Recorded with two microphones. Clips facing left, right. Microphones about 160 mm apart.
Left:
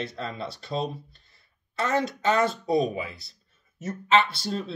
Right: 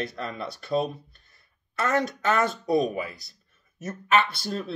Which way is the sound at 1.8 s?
25° left (ahead or behind).